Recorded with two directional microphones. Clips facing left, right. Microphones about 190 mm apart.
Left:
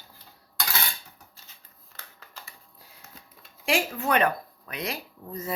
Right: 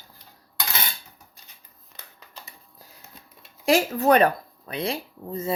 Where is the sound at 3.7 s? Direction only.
40° right (ahead or behind).